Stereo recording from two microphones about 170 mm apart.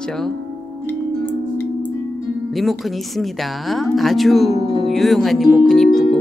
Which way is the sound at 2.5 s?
Centre (ahead or behind).